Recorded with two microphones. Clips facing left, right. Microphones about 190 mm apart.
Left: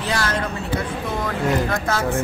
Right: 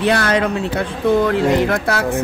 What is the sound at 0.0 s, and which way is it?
Speech, 65° right (ahead or behind).